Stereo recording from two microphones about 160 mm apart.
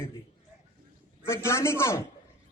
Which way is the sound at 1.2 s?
15° left (ahead or behind).